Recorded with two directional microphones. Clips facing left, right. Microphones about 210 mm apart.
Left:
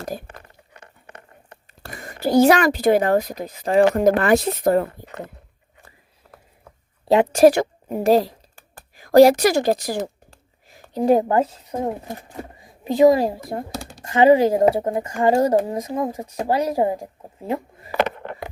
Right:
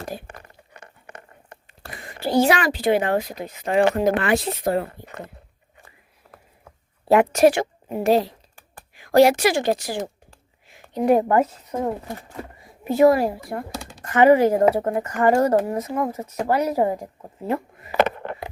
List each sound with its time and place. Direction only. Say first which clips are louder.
0.0 s a sound: left 2 dB; 45° left (ahead or behind)
1.8 s speech: left 4 dB; 45° left (ahead or behind)
7.1 s speech: even; 20° left (ahead or behind)
7.4 s a woman's voice: left 3 dB; 40° left (ahead or behind)
10.7 s a sound: left 1 dB; 40° left (ahead or behind)
11.0 s speech: left 1 dB; 25° left (ahead or behind)